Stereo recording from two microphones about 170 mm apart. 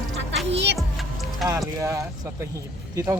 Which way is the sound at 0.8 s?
Centre (ahead or behind).